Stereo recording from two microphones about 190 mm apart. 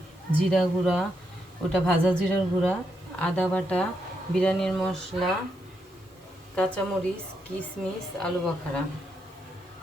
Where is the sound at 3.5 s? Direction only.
5° left (ahead or behind).